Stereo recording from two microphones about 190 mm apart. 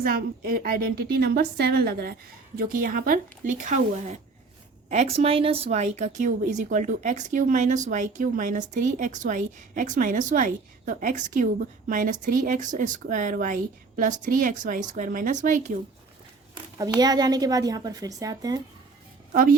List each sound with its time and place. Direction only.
0.0 s a woman's voice: 50° right (ahead or behind)
16.7 s a woman's voice: 20° right (ahead or behind)
19.3 s a woman's voice: 50° right (ahead or behind)